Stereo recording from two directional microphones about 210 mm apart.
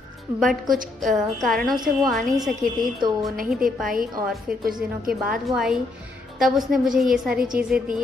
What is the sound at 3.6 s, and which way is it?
A woman's voice, 40° right (ahead or behind).